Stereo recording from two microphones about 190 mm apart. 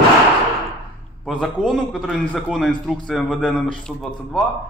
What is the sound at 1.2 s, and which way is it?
A man's voice, 5° left (ahead or behind).